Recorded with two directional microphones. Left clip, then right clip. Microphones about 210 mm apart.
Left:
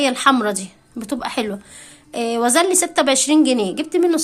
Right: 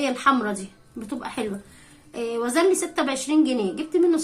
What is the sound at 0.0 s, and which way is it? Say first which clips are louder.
A woman's voice: left 5 dB; 40° left (ahead or behind).